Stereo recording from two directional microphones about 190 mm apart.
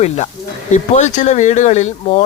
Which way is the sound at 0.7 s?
40° left (ahead or behind).